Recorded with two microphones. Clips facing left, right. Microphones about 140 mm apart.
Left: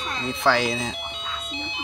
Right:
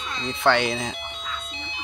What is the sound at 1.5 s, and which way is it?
Music, centre (ahead or behind).